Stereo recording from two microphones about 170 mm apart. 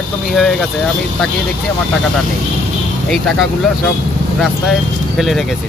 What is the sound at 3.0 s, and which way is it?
Speech, centre (ahead or behind).